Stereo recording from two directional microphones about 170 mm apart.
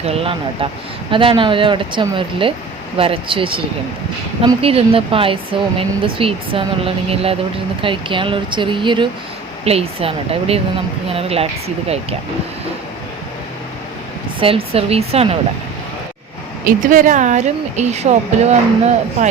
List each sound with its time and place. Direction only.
0.0 s speech: 35° right (ahead or behind)
4.6 s speech: 35° right (ahead or behind)
14.4 s speech: 35° right (ahead or behind)
16.6 s speech: 55° right (ahead or behind)